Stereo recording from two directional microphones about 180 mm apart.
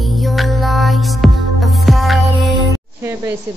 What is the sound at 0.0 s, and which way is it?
Music, centre (ahead or behind).